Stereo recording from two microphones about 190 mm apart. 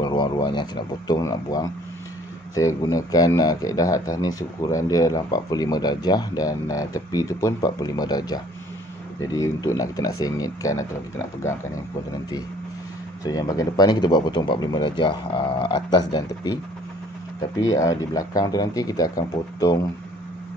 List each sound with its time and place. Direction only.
0.0 s speech: 25° left (ahead or behind)
13.2 s speech: 20° left (ahead or behind)
17.6 s speech: 15° left (ahead or behind)